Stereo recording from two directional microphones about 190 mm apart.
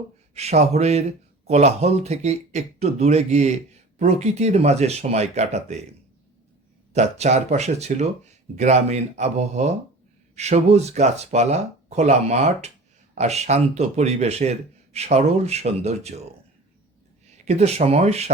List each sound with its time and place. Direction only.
0.3 s speech: 35° right (ahead or behind)
6.9 s speech: 35° right (ahead or behind)
17.3 s speech: 35° right (ahead or behind)